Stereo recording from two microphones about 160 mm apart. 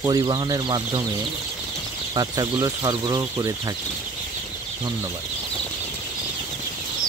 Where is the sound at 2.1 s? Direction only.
25° right (ahead or behind).